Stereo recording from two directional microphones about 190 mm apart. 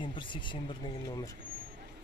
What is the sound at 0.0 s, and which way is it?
Speech, 25° left (ahead or behind).